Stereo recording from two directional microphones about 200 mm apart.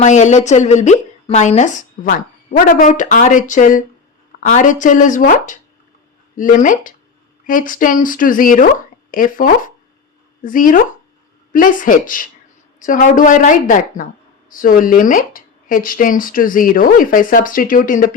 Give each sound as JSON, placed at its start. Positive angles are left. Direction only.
{"t": 0.0, "sound": "a woman's voice", "side_deg": 35}